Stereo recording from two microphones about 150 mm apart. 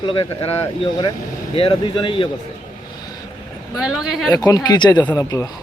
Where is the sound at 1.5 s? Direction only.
35° left (ahead or behind).